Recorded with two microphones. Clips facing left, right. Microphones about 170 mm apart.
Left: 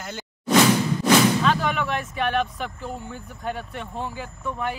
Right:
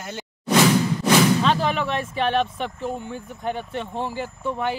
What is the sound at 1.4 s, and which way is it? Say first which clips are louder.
Speech: right 1 dB; 25° right (ahead or behind).